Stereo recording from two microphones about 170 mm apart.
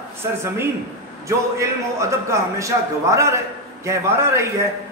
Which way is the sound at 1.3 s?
15° right (ahead or behind).